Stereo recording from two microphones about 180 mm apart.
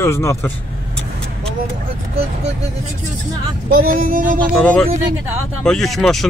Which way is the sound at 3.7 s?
55° right (ahead or behind).